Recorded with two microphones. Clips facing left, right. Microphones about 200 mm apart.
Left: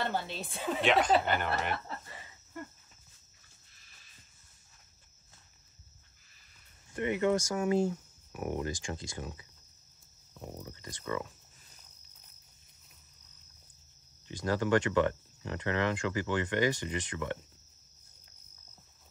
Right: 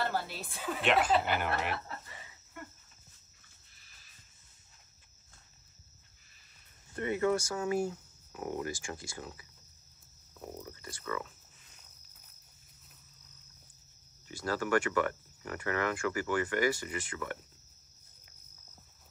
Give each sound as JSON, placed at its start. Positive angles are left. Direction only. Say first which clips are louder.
{"t": 0.4, "sound": "speech", "louder": "left 4 dB", "side_deg": 25}
{"t": 0.7, "sound": "speech", "louder": "left 1 dB", "side_deg": 0}
{"t": 7.0, "sound": "speech", "louder": "left 1 dB", "side_deg": 20}
{"t": 10.8, "sound": "speech", "louder": "left 3 dB", "side_deg": 20}
{"t": 14.2, "sound": "speech", "louder": "left 3 dB", "side_deg": 20}